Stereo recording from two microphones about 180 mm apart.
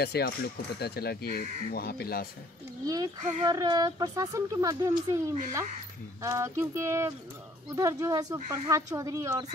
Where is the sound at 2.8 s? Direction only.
20° right (ahead or behind).